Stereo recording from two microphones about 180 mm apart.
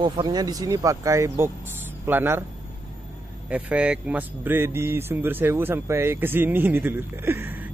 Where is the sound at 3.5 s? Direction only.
5° right (ahead or behind).